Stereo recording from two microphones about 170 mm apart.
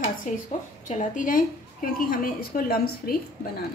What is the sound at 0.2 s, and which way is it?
A woman's voice, 45° left (ahead or behind).